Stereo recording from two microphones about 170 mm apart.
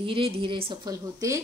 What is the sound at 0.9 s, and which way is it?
Speech, 20° right (ahead or behind).